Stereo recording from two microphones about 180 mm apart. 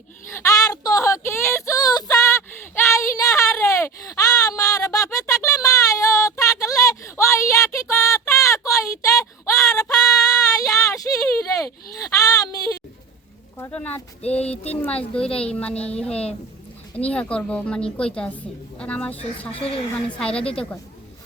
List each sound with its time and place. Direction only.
0.3 s a sound: 15° left (ahead or behind)
15.4 s a sound: 5° left (ahead or behind)
16.9 s a woman's voice: 5° left (ahead or behind)
19.5 s a woman's voice: 30° left (ahead or behind)
19.9 s a woman's voice: 5° left (ahead or behind)
20.4 s a woman's voice: 30° left (ahead or behind)